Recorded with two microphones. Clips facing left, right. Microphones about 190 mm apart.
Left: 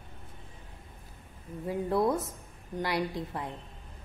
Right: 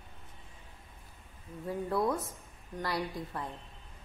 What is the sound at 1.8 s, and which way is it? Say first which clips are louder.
A woman's voice: left 4 dB; 25° left (ahead or behind).